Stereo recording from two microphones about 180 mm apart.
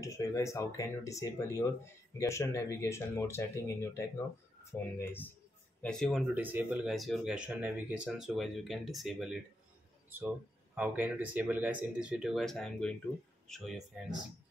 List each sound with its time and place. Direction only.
0.0 s speech: 15° left (ahead or behind)
6.3 s speech: 10° right (ahead or behind)